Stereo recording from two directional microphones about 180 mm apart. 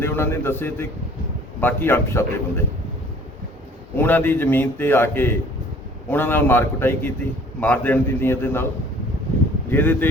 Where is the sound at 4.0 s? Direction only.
10° left (ahead or behind).